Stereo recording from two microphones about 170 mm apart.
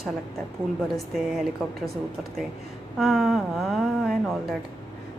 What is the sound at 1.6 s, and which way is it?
Speech, centre (ahead or behind).